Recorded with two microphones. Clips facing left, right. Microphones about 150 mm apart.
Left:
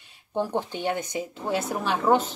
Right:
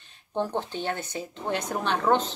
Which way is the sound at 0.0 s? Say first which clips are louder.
Left 1 dB; 10° left (ahead or behind).